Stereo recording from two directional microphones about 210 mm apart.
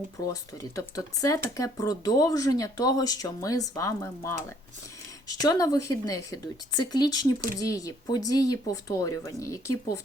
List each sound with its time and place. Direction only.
0.3 s speech: 15° left (ahead or behind)